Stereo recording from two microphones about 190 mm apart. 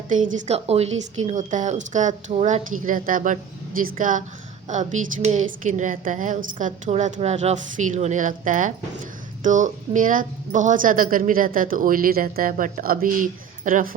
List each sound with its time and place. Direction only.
0.1 s a woman's voice: 45° right (ahead or behind)